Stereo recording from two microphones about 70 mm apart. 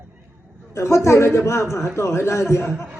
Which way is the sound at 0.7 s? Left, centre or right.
Left.